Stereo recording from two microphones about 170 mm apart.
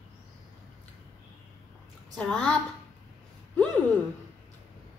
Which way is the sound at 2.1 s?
5° left (ahead or behind).